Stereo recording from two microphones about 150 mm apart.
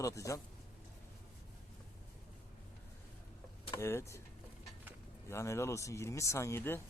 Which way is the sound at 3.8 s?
20° left (ahead or behind).